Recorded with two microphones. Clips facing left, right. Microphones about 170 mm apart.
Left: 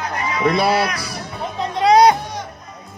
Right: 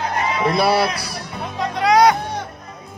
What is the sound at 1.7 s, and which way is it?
Music, 30° left (ahead or behind).